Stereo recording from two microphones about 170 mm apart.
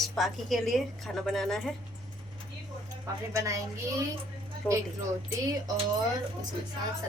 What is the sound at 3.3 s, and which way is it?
Speech, 20° right (ahead or behind).